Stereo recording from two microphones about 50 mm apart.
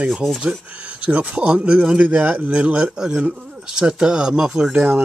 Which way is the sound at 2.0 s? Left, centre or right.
Right.